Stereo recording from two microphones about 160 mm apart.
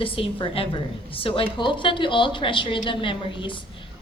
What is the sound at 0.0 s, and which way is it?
A woman's voice, 35° left (ahead or behind).